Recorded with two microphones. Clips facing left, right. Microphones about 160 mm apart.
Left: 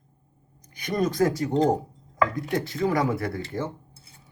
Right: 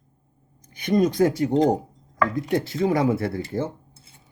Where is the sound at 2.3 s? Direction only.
25° right (ahead or behind).